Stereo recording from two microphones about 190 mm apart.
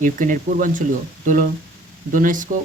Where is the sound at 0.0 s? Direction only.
45° right (ahead or behind).